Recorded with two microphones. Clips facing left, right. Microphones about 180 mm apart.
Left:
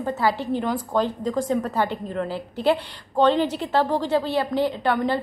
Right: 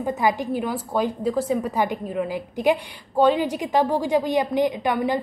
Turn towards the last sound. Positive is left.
turn(degrees=-15)  # may be behind; listen again after turning